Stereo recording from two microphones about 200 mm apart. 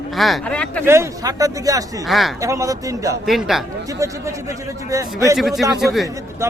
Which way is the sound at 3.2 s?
Centre (ahead or behind).